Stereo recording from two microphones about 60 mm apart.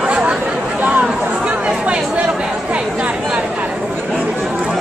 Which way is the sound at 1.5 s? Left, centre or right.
Centre.